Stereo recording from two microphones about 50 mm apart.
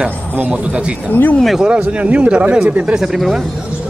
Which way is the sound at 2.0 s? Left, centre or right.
Right.